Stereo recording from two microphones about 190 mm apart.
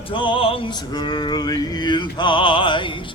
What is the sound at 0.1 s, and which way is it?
Music, 25° left (ahead or behind).